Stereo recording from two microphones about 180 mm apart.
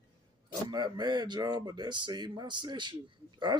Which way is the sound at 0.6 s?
25° right (ahead or behind).